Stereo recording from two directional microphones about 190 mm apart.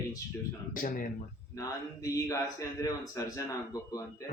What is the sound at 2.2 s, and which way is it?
Speech, 15° left (ahead or behind).